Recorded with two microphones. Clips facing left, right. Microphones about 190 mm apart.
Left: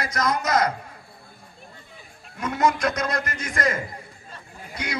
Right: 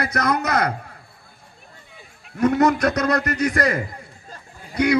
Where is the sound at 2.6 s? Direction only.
65° right (ahead or behind).